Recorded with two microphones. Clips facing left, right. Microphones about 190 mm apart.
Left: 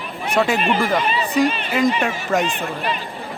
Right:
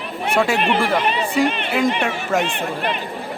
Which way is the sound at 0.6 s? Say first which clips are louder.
Right 1 dB; 65° right (ahead or behind).